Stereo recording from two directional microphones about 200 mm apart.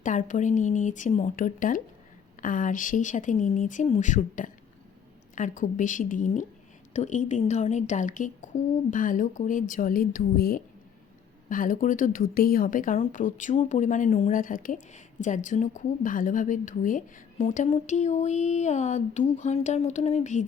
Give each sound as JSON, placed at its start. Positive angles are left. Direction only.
{"t": 0.0, "sound": "speech", "side_deg": 40}